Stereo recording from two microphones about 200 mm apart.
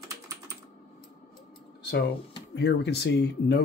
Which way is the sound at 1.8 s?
55° left (ahead or behind).